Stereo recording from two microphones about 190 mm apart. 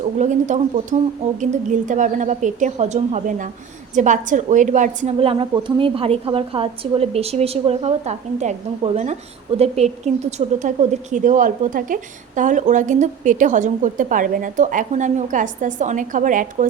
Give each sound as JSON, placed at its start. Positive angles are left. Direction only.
{"t": 0.2, "sound": "a woman's voice", "side_deg": -40}